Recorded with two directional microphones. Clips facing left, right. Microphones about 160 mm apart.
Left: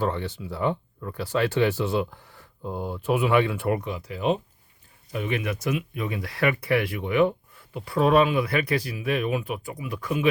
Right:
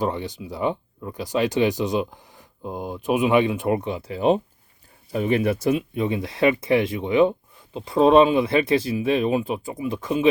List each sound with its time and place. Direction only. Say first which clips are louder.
0.0 s speech: right 2 dB; 15° right (ahead or behind)